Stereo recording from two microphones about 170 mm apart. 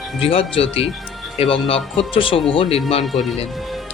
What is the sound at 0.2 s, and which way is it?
Speech, 35° left (ahead or behind).